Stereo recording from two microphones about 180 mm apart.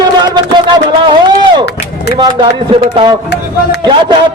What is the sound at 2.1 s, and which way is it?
A man's voice, 25° right (ahead or behind).